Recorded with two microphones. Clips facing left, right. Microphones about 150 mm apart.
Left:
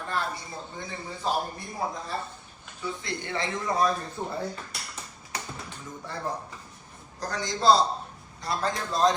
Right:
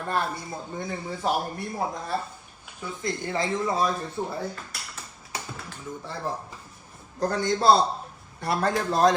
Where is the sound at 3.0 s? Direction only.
40° right (ahead or behind).